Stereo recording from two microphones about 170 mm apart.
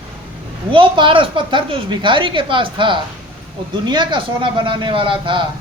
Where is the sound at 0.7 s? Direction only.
30° right (ahead or behind).